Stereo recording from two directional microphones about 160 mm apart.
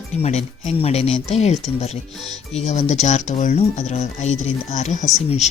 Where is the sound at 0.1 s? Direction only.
45° left (ahead or behind).